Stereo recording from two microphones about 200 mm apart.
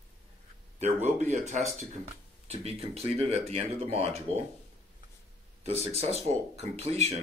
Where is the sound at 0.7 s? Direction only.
35° right (ahead or behind).